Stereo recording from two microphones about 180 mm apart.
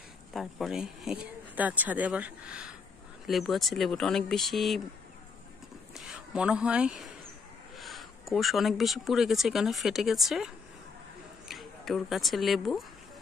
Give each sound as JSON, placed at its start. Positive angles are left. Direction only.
{"t": 0.3, "sound": "speech", "side_deg": 0}
{"t": 5.9, "sound": "speech", "side_deg": -5}